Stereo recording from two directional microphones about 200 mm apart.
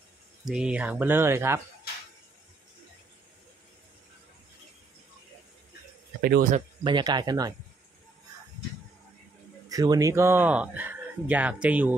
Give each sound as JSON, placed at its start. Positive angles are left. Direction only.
{"t": 0.5, "sound": "speech", "side_deg": -5}
{"t": 6.2, "sound": "speech", "side_deg": -50}
{"t": 6.8, "sound": "speech", "side_deg": -20}
{"t": 9.7, "sound": "speech", "side_deg": -20}